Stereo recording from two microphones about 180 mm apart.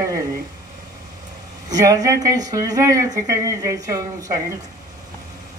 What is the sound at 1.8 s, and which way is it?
Speech, 20° right (ahead or behind).